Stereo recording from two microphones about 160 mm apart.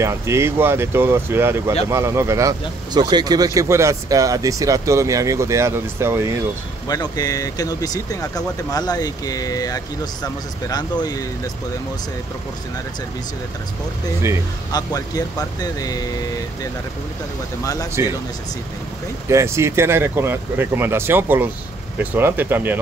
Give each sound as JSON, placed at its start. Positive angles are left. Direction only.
{"t": 0.0, "sound": "speech", "side_deg": -15}
{"t": 6.9, "sound": "speech", "side_deg": 25}
{"t": 14.7, "sound": "speech", "side_deg": 20}
{"t": 18.0, "sound": "speech", "side_deg": -15}
{"t": 19.2, "sound": "speech", "side_deg": -15}